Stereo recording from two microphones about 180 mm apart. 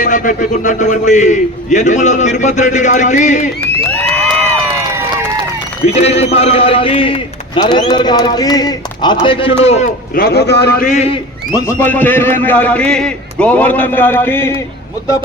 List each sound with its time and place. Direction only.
0.0 s a man's voice: 45° left (ahead or behind)
5.8 s a man's voice: 35° left (ahead or behind)
10.2 s a man's voice: 60° left (ahead or behind); by 11.2 s 40° left (ahead or behind)
11.5 s a man's voice: 15° left (ahead or behind)